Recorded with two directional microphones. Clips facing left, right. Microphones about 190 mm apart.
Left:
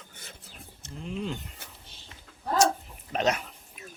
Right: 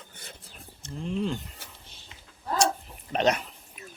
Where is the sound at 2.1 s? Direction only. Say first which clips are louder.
Left 1 dB; 15° right (ahead or behind).